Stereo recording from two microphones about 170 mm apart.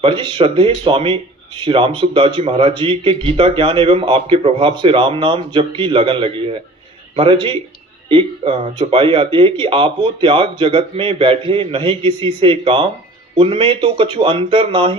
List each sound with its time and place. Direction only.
0.0 s speech: 30° right (ahead or behind)